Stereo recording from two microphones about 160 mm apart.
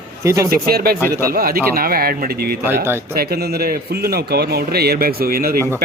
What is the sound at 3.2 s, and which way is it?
A man's voice, 75° right (ahead or behind).